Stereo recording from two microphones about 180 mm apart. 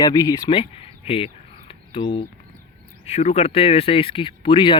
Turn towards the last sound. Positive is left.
turn(degrees=30)  # may be behind; listen again after turning